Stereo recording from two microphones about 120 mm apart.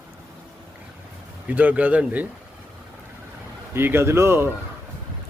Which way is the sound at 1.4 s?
10° right (ahead or behind).